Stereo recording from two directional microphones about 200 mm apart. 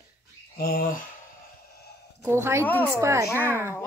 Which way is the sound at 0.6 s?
45° left (ahead or behind).